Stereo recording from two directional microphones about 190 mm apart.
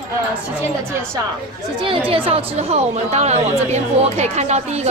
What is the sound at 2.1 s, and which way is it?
A woman's voice, 30° right (ahead or behind).